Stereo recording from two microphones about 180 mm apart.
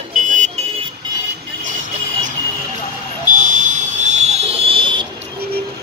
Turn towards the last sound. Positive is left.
turn(degrees=-30)  # may be behind; listen again after turning